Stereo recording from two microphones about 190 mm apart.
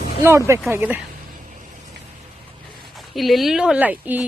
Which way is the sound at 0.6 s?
10° right (ahead or behind).